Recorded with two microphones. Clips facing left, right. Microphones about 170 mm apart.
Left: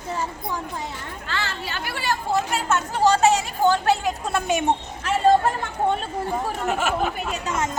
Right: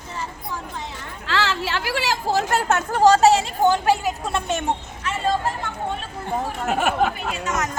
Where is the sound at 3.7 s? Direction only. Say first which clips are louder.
Right 1 dB; 10° right (ahead or behind).